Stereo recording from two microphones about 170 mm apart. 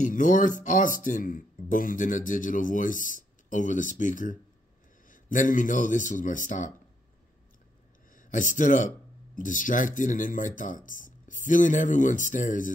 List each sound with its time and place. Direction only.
0.0 s speech: 50° left (ahead or behind)
8.1 s speech: 50° left (ahead or behind)